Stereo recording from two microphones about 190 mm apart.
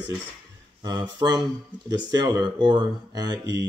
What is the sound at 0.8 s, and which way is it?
Speech, 20° right (ahead or behind).